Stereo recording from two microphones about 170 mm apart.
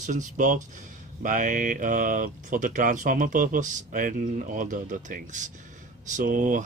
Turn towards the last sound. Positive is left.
turn(degrees=-50)  # may be behind; listen again after turning